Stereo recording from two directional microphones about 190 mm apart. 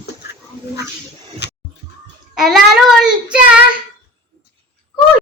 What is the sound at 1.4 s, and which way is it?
Music, 65° left (ahead or behind).